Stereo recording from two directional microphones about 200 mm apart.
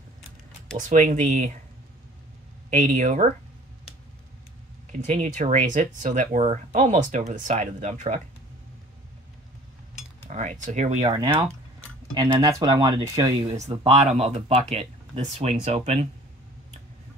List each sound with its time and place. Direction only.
0.7 s speech: 40° right (ahead or behind)
2.7 s speech: 40° right (ahead or behind)
5.0 s speech: 35° right (ahead or behind)
10.2 s speech: 35° right (ahead or behind)
11.1 s speech: 25° right (ahead or behind)
13.8 s speech: 35° right (ahead or behind)